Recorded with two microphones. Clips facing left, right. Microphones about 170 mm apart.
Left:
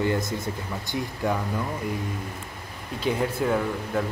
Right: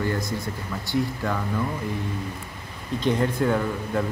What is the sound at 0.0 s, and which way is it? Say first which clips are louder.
Speech: left 1 dB; 20° left (ahead or behind).